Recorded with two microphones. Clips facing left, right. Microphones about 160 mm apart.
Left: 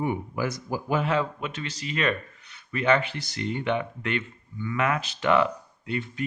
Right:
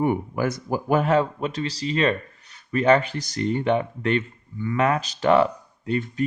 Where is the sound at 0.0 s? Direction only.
50° right (ahead or behind).